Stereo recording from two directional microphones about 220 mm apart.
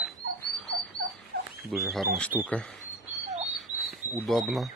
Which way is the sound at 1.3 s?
45° right (ahead or behind).